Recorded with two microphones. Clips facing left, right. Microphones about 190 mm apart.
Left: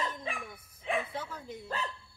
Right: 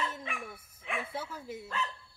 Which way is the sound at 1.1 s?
5° right (ahead or behind).